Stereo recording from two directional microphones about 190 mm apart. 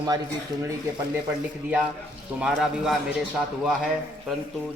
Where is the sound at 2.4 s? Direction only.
5° right (ahead or behind).